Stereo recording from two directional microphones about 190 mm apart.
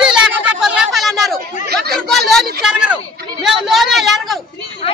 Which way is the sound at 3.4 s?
Centre (ahead or behind).